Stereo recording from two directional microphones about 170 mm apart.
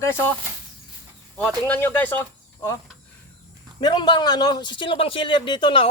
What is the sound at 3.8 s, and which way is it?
A man's voice, 25° left (ahead or behind).